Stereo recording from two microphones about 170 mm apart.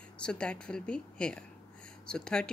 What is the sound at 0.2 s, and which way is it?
Speech, 5° left (ahead or behind).